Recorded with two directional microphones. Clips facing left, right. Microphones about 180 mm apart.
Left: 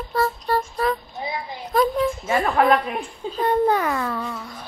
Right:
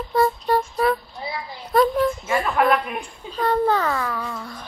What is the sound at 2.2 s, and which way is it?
A child's voice, 35° left (ahead or behind).